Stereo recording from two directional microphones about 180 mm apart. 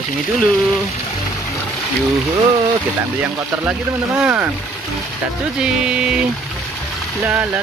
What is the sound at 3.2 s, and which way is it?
Speech, 10° right (ahead or behind).